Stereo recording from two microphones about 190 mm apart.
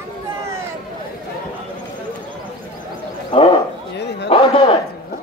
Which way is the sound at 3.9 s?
65° left (ahead or behind).